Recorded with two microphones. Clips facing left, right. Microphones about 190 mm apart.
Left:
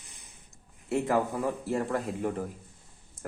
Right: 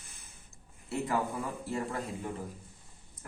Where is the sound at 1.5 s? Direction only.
60° left (ahead or behind).